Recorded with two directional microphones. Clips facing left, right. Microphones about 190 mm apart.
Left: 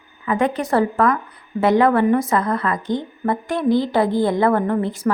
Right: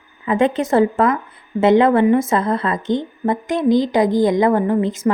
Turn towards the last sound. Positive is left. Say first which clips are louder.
# right 3 dB
turn(degrees=-20)  # may be behind; listen again after turning